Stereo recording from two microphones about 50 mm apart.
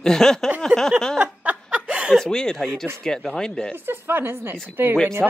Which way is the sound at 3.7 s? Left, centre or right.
Right.